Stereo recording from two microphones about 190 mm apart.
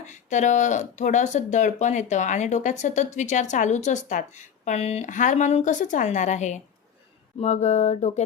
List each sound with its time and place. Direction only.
0.0 s speech: 40° left (ahead or behind)